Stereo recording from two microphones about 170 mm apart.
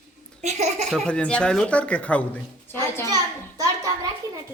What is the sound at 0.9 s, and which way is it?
Speech, 5° left (ahead or behind).